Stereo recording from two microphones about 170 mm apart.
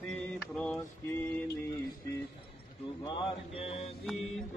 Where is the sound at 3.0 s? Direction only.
35° left (ahead or behind).